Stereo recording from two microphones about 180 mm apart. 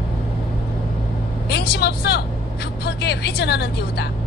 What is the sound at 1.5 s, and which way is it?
Vehicle, 65° left (ahead or behind).